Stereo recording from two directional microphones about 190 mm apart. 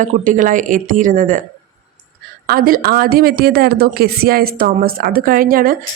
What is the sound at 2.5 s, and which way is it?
Speech, 50° right (ahead or behind).